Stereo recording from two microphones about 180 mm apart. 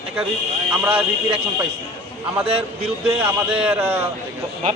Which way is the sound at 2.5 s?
35° right (ahead or behind).